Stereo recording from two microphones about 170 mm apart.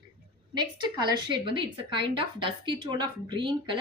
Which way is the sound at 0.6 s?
25° right (ahead or behind).